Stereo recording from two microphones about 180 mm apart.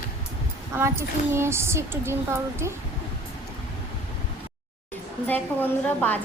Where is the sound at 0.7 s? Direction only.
15° right (ahead or behind).